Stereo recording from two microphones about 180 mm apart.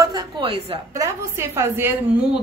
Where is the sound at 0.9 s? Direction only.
15° right (ahead or behind).